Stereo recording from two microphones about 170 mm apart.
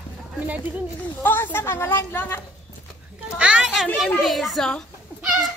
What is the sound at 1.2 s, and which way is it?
A woman's voice, 10° left (ahead or behind).